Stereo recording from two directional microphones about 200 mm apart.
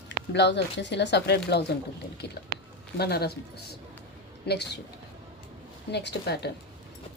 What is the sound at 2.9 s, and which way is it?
Speech, 55° left (ahead or behind).